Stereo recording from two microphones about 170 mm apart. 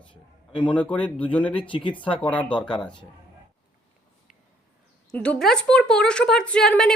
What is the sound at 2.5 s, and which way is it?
Speech, 30° left (ahead or behind).